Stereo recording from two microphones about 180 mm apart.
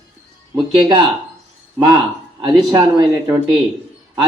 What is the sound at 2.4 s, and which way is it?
Speech, 25° right (ahead or behind).